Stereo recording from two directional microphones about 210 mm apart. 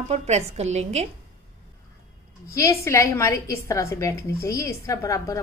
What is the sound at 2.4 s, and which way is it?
A woman's voice, 15° left (ahead or behind).